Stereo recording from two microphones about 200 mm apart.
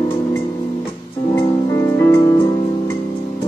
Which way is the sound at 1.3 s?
15° left (ahead or behind).